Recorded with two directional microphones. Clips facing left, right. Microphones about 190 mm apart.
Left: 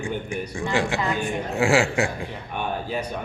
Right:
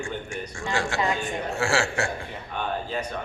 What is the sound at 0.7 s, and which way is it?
A man's voice, 15° left (ahead or behind).